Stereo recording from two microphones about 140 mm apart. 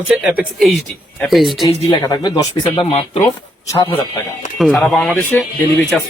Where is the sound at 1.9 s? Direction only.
30° left (ahead or behind).